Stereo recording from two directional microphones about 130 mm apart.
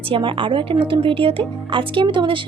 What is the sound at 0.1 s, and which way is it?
A woman's voice, 40° right (ahead or behind).